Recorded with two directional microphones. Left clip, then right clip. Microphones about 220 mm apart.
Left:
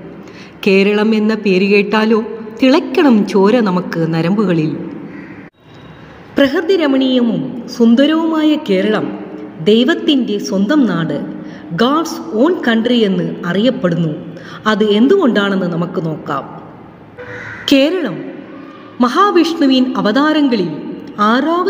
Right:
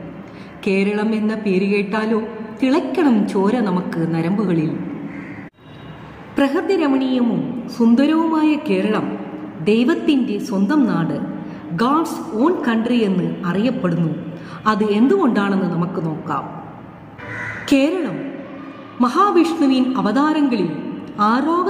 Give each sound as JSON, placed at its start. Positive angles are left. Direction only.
{"t": 0.7, "sound": "a man's voice", "side_deg": 35}
{"t": 6.3, "sound": "a man's voice", "side_deg": 30}
{"t": 17.6, "sound": "a man's voice", "side_deg": 35}